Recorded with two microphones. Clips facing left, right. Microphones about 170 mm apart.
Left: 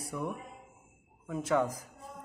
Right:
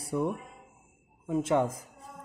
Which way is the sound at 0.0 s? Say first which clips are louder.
Right 7 dB; 30° right (ahead or behind).